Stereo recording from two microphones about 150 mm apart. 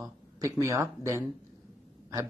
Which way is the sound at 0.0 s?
20° right (ahead or behind).